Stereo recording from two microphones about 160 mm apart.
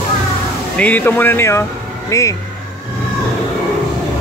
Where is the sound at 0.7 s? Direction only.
10° left (ahead or behind).